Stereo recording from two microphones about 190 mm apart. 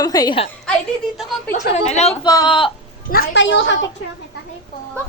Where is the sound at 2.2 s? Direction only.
25° left (ahead or behind).